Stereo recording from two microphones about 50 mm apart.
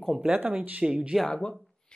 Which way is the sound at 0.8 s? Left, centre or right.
Centre.